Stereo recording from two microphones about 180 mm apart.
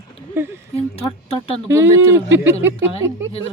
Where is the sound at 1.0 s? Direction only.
35° left (ahead or behind).